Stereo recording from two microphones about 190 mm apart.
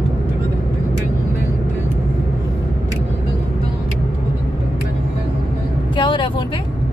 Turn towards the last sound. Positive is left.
turn(degrees=25)  # may be behind; listen again after turning